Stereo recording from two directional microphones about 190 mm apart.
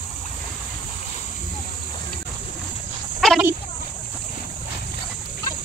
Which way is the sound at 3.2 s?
Centre (ahead or behind).